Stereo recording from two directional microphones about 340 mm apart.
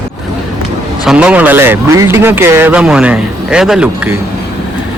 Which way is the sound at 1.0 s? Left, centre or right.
Centre.